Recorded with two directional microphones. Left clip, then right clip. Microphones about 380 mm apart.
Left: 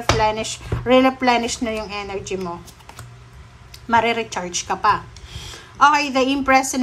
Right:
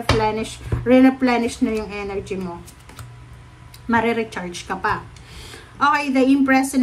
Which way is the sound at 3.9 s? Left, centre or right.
Centre.